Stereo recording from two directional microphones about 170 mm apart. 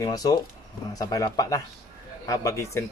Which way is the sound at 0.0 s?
20° left (ahead or behind).